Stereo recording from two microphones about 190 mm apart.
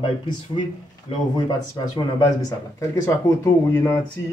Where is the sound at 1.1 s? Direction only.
30° left (ahead or behind).